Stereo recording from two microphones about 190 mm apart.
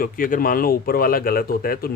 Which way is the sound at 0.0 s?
50° left (ahead or behind).